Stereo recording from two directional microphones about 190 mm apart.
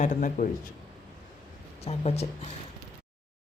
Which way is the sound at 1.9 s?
35° left (ahead or behind).